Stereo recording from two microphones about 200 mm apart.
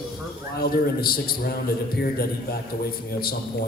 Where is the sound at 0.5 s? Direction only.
50° left (ahead or behind).